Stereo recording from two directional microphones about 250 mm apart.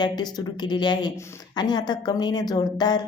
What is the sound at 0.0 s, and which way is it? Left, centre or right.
A woman's voice, centre.